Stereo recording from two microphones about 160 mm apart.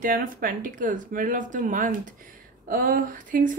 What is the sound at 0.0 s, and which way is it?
Speech, 60° right (ahead or behind).